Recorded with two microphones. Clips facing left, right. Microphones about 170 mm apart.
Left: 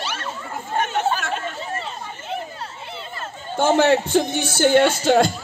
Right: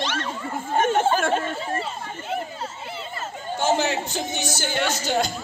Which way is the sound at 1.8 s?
Centre (ahead or behind).